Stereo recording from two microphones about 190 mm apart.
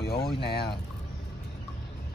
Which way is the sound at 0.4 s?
55° left (ahead or behind).